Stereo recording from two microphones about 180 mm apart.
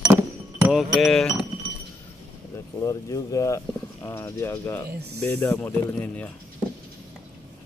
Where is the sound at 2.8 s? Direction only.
20° left (ahead or behind).